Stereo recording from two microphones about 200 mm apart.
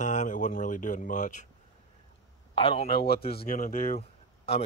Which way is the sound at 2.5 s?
25° left (ahead or behind).